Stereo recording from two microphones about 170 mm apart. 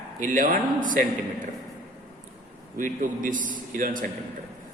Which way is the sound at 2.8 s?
50° right (ahead or behind).